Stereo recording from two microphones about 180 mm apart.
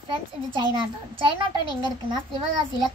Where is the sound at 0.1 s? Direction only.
25° right (ahead or behind).